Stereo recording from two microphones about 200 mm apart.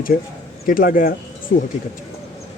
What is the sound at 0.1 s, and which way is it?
Speech, 50° left (ahead or behind).